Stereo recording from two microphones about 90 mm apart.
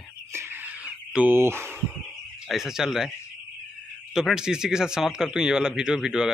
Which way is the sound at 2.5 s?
5° right (ahead or behind).